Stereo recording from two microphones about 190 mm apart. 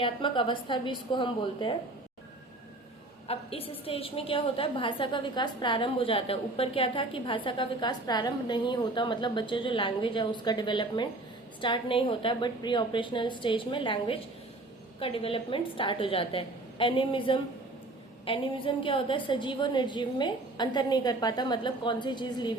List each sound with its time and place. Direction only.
0.0 s a woman's voice: 25° left (ahead or behind)
3.2 s a woman's voice: 30° left (ahead or behind)